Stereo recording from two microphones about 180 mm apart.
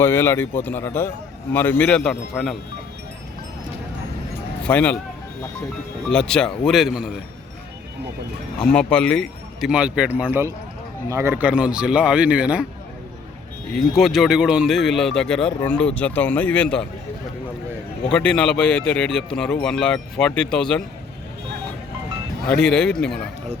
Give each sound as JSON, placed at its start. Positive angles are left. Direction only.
{"t": 0.0, "sound": "a man's voice", "side_deg": 15}
{"t": 4.6, "sound": "a man's voice", "side_deg": 10}
{"t": 6.1, "sound": "speech", "side_deg": 5}
{"t": 8.6, "sound": "speech", "side_deg": 5}
{"t": 13.7, "sound": "speech", "side_deg": 0}
{"t": 18.1, "sound": "speech", "side_deg": 5}
{"t": 22.4, "sound": "speech", "side_deg": 5}